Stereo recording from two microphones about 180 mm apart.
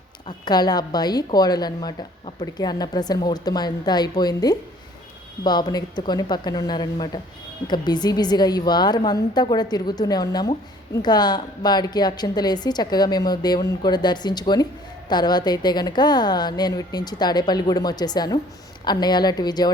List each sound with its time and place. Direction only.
0.3 s a woman's voice: 25° left (ahead or behind)